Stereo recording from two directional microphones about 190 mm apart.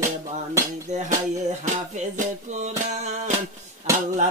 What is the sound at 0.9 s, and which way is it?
Music, 40° right (ahead or behind).